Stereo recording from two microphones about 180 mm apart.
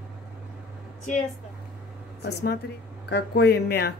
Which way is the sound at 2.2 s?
65° left (ahead or behind).